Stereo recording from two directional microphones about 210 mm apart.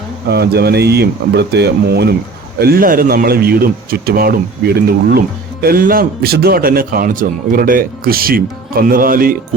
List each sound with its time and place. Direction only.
0.3 s speech: 50° right (ahead or behind)